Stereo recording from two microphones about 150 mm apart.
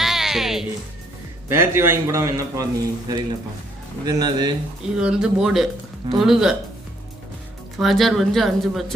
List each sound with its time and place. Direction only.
0.0 s music: centre (ahead or behind)
1.5 s a man's voice: 15° right (ahead or behind)
4.9 s speech: 5° right (ahead or behind)
7.8 s speech: centre (ahead or behind)